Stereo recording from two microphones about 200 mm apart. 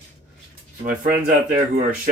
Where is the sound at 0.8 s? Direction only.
40° right (ahead or behind).